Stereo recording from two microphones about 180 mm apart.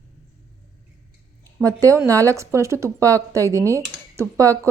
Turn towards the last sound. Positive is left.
turn(degrees=-15)  # may be behind; listen again after turning